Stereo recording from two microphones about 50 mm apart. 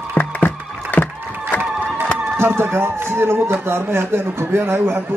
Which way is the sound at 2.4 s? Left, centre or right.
Right.